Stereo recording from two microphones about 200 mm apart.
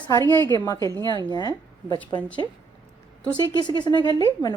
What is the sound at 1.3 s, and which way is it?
Speech, 20° left (ahead or behind).